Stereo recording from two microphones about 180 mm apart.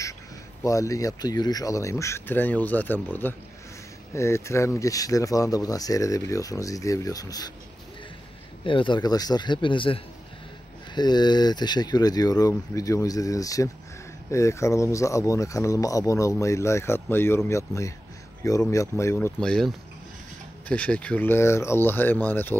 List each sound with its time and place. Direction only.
0.7 s speech: 20° left (ahead or behind)
8.6 s speech: 30° left (ahead or behind)
11.0 s speech: 25° left (ahead or behind)